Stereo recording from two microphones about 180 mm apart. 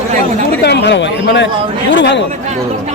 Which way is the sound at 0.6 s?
65° left (ahead or behind).